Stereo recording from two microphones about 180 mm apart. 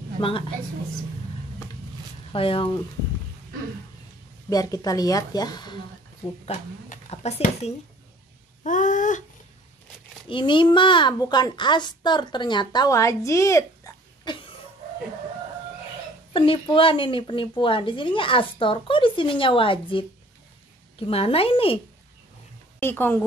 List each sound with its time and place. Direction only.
0.2 s speech: 25° left (ahead or behind)
2.3 s speech: 30° left (ahead or behind)
4.5 s speech: 20° left (ahead or behind)
6.4 s speech: 35° left (ahead or behind)
8.6 s a sound: 45° left (ahead or behind)
10.2 s a child's voice: 25° left (ahead or behind)
16.3 s speech: 30° left (ahead or behind)
22.8 s a woman's voice: 10° left (ahead or behind)